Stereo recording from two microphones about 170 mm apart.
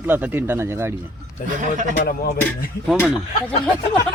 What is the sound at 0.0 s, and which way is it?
Speech, 10° right (ahead or behind).